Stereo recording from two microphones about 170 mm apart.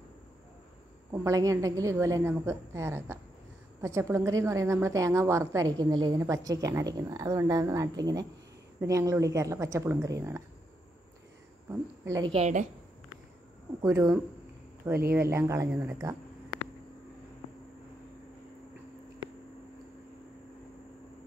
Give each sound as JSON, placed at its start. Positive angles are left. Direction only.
{"t": 1.1, "sound": "a woman's voice", "side_deg": -15}
{"t": 12.0, "sound": "a woman's voice", "side_deg": -20}
{"t": 12.3, "sound": "a woman's voice", "side_deg": -40}
{"t": 13.8, "sound": "a woman's voice", "side_deg": -15}